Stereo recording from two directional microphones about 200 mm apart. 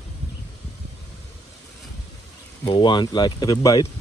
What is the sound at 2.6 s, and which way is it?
Speech, 25° left (ahead or behind).